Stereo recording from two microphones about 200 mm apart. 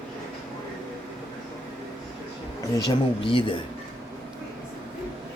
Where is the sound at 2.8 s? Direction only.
25° left (ahead or behind).